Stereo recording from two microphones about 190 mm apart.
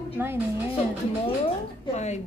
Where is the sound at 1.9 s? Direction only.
35° left (ahead or behind).